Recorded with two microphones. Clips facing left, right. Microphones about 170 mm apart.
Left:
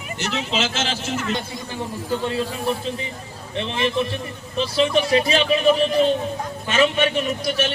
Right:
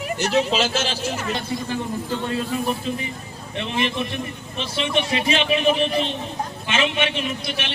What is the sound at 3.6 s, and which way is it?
A man's voice, 35° left (ahead or behind).